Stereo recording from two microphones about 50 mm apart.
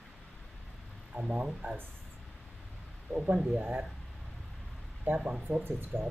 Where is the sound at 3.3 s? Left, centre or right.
Centre.